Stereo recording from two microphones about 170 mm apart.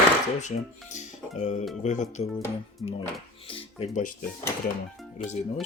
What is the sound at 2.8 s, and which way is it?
Speech, 35° left (ahead or behind).